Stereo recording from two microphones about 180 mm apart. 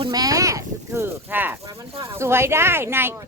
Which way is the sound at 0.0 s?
20° right (ahead or behind).